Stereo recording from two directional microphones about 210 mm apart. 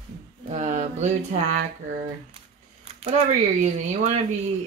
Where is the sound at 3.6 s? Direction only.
35° right (ahead or behind).